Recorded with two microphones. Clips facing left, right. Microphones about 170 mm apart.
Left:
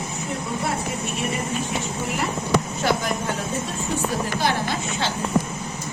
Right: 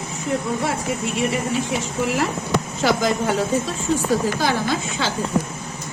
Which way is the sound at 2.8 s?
90° right.